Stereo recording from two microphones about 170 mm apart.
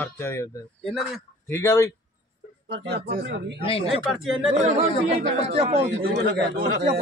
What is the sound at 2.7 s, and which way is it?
Speech, 70° right (ahead or behind).